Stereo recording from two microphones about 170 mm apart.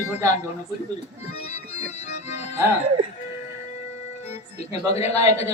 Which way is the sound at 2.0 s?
40° left (ahead or behind).